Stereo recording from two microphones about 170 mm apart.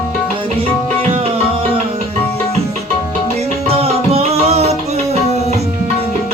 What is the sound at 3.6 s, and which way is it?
Music, 35° right (ahead or behind).